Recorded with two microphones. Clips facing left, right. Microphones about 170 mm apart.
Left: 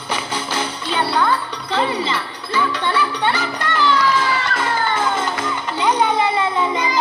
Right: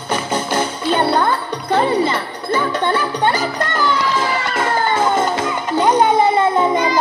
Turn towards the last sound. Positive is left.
turn(degrees=-50)  # may be behind; listen again after turning